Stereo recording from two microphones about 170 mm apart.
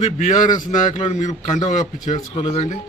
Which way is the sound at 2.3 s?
35° left (ahead or behind).